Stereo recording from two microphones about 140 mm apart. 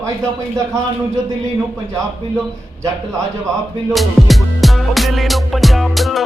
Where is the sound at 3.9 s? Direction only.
Centre (ahead or behind).